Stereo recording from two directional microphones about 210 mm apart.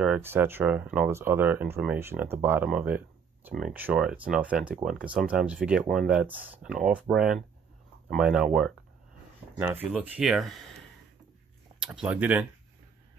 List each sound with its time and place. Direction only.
0.0 s speech: 10° right (ahead or behind)
11.9 s speech: 5° right (ahead or behind)